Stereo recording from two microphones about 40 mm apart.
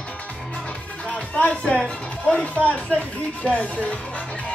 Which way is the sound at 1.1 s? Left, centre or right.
Left.